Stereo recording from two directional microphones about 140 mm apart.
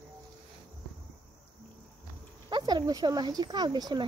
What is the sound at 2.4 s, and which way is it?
Speech, 30° right (ahead or behind).